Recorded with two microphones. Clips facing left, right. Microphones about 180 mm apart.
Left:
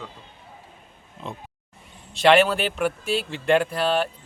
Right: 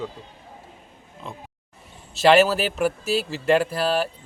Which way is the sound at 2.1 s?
5° right (ahead or behind).